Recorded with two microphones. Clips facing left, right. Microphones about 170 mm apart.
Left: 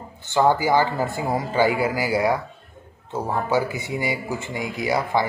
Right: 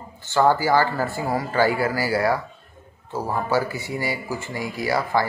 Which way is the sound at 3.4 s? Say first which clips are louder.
Left 1 dB; 15° left (ahead or behind).